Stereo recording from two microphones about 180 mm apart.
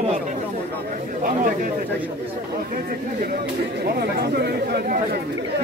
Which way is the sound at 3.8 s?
60° right (ahead or behind).